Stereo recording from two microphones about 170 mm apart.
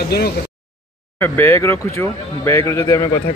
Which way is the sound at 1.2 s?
15° left (ahead or behind).